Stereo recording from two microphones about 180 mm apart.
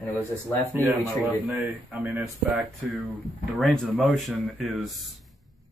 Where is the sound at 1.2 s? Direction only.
Centre (ahead or behind).